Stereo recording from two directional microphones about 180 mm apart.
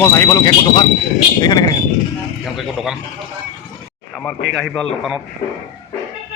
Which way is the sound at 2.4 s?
Centre (ahead or behind).